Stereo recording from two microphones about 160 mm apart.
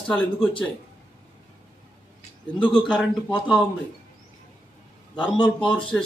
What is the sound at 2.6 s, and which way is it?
Speech, 5° left (ahead or behind).